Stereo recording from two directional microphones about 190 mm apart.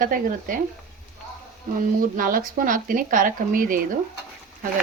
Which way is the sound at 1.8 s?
45° right (ahead or behind).